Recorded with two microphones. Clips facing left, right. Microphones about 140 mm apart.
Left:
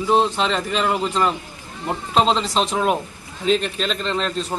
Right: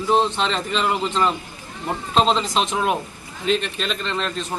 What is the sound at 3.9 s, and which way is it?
Speech, 35° left (ahead or behind).